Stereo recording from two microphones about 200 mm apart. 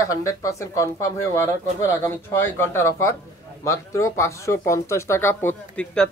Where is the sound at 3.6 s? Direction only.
15° left (ahead or behind).